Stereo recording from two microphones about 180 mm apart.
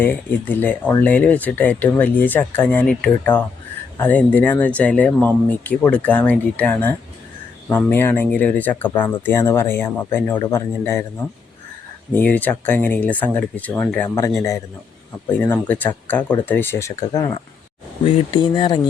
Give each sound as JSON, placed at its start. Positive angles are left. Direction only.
{"t": 0.0, "sound": "speech", "side_deg": 10}
{"t": 12.1, "sound": "speech", "side_deg": 10}